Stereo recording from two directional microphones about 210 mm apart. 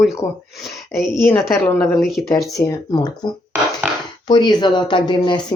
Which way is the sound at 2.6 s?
15° left (ahead or behind).